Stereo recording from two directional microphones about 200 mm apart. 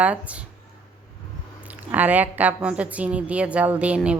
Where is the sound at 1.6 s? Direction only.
10° right (ahead or behind).